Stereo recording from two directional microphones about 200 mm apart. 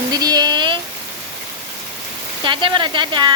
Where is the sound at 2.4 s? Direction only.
25° right (ahead or behind).